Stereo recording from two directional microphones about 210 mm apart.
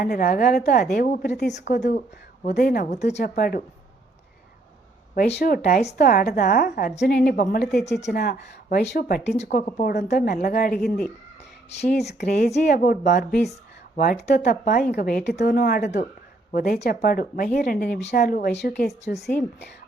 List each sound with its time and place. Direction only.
0.0 s a woman's voice: 45° left (ahead or behind)
1.5 s a woman's voice: 35° left (ahead or behind)
5.1 s a woman's voice: 50° left (ahead or behind)
5.6 s a woman's voice: 35° left (ahead or behind)
11.9 s a woman's voice: 50° left (ahead or behind)
14.3 s a woman's voice: 35° left (ahead or behind)